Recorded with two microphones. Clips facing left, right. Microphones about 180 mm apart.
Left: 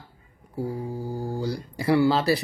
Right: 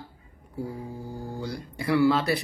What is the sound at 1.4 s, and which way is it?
Speech, 30° left (ahead or behind).